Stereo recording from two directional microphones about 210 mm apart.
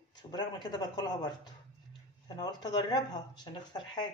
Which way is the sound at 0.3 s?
20° left (ahead or behind).